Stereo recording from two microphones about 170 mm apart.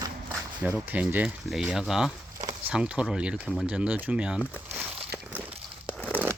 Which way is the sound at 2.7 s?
5° right (ahead or behind).